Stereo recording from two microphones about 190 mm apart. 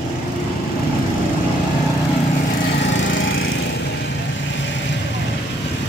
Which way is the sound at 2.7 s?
70° left (ahead or behind).